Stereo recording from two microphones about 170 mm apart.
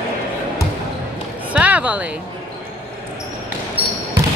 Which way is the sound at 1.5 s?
10° right (ahead or behind).